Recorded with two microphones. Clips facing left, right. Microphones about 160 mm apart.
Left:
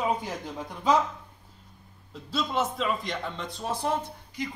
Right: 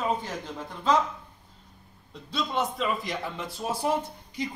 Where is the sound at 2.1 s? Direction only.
Centre (ahead or behind).